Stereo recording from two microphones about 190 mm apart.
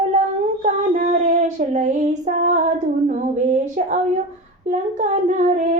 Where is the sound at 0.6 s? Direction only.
40° right (ahead or behind).